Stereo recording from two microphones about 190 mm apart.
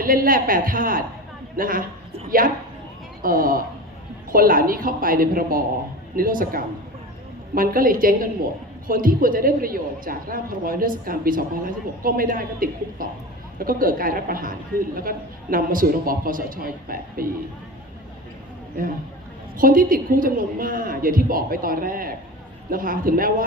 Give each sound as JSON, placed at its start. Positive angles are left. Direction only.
{"t": 0.0, "sound": "a man's voice", "side_deg": -50}
{"t": 3.2, "sound": "a man's voice", "side_deg": -50}
{"t": 19.5, "sound": "a man's voice", "side_deg": -45}